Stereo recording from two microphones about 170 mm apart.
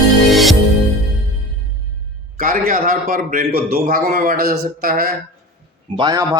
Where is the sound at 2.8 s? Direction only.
60° right (ahead or behind).